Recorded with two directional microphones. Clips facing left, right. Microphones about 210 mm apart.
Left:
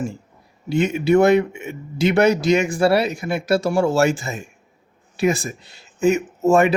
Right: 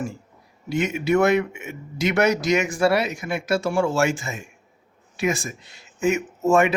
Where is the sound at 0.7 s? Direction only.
35° left (ahead or behind).